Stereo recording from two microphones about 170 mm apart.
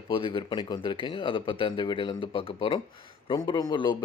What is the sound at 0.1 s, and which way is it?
Speech, 30° left (ahead or behind).